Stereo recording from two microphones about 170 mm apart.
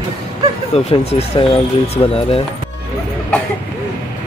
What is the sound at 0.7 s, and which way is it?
Speech, 40° left (ahead or behind).